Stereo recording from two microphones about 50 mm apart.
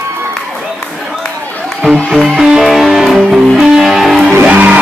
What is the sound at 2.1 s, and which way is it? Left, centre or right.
Music, centre.